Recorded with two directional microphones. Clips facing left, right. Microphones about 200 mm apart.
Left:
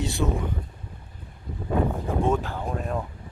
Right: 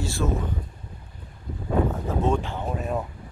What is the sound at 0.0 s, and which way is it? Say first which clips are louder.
Speech: left 1 dB; 20° left (ahead or behind).